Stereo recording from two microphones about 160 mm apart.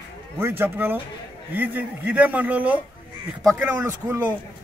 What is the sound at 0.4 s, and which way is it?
A man's voice, 15° right (ahead or behind).